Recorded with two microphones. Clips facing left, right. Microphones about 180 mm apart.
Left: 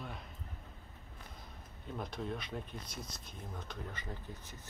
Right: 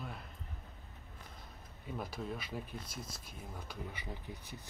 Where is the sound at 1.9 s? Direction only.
5° right (ahead or behind).